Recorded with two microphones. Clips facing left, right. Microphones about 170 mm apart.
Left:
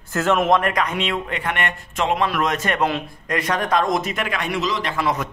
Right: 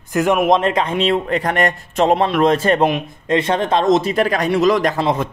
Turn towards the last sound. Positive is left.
turn(degrees=-25)  # may be behind; listen again after turning